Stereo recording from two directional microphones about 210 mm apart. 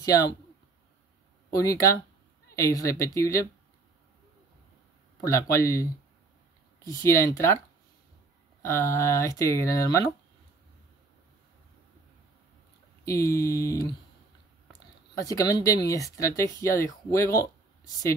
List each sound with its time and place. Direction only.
0.0 s speech: 15° left (ahead or behind)
1.5 s speech: 15° left (ahead or behind)
5.2 s speech: 15° left (ahead or behind)
6.9 s speech: 15° left (ahead or behind)
8.6 s speech: 10° left (ahead or behind)
13.0 s speech: 15° left (ahead or behind)
15.1 s speech: 15° left (ahead or behind)